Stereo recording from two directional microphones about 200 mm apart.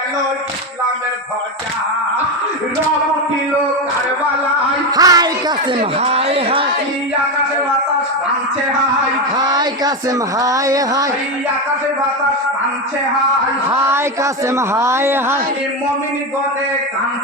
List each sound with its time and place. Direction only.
4.9 s speech: 20° right (ahead or behind)
6.0 s speech: 30° right (ahead or behind)
9.4 s speech: 20° right (ahead or behind)
13.7 s speech: 10° right (ahead or behind)